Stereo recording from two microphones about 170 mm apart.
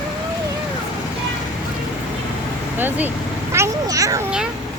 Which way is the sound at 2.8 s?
10° right (ahead or behind).